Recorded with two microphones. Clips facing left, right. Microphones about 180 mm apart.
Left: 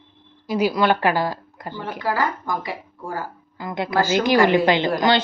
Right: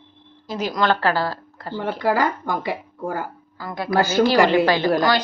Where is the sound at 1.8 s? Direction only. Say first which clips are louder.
Right 4 dB; 70° right (ahead or behind).